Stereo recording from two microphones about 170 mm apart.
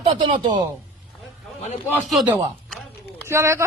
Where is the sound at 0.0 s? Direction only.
30° right (ahead or behind).